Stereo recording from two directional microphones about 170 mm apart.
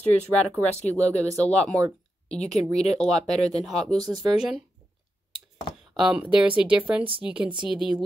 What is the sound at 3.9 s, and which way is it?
Speech, 25° right (ahead or behind).